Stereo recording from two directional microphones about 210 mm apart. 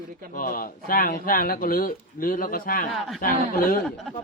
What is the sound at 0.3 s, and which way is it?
Speech, 40° left (ahead or behind).